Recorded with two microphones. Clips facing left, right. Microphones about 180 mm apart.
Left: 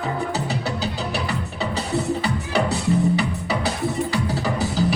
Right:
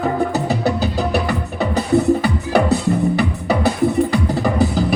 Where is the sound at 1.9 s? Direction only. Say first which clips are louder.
Right 8 dB; 60° right (ahead or behind).